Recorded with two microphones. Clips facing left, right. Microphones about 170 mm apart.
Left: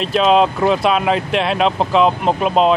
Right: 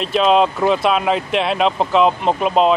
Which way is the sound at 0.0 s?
Centre (ahead or behind).